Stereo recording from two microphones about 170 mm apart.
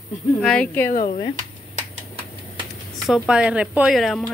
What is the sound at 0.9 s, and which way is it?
Speech, 50° left (ahead or behind).